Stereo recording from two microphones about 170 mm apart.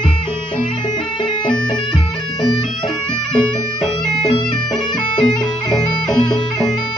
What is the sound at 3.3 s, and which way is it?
Bagpipes, 5° left (ahead or behind).